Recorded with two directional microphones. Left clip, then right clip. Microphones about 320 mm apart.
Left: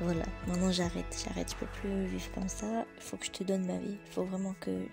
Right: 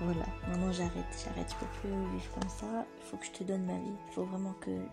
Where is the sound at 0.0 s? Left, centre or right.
Left.